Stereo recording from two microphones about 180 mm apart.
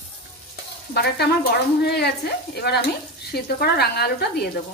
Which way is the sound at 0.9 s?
65° left (ahead or behind).